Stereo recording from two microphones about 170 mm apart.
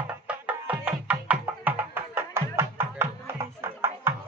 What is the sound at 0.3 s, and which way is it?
Music, 10° right (ahead or behind).